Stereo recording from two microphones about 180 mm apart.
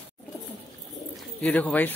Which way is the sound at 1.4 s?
10° left (ahead or behind).